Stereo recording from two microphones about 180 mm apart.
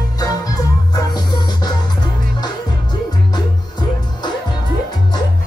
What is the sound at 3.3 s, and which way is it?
Music, 25° left (ahead or behind).